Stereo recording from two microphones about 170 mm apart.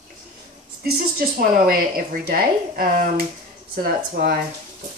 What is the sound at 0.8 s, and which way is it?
Speech, 55° right (ahead or behind).